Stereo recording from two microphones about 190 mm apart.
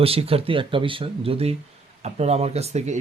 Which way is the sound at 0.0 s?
30° right (ahead or behind).